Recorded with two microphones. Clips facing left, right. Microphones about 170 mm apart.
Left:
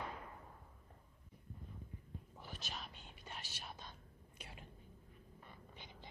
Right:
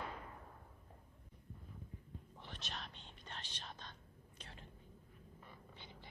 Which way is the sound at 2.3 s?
5° left (ahead or behind).